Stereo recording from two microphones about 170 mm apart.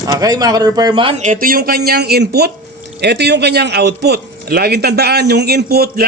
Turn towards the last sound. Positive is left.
turn(degrees=-65)  # may be behind; listen again after turning